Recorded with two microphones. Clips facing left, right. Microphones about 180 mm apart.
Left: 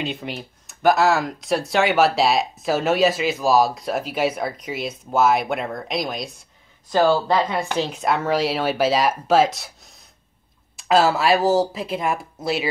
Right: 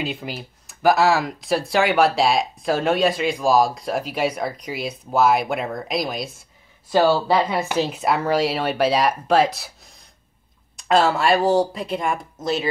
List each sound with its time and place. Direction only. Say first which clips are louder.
0.0 s speech: even; centre (ahead or behind)